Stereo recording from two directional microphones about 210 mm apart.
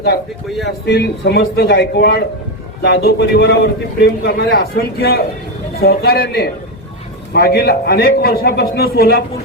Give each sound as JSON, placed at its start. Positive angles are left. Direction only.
{"t": 0.6, "sound": "a man's voice", "side_deg": 55}